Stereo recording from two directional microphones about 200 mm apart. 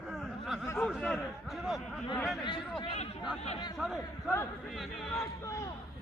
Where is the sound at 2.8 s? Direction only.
25° left (ahead or behind).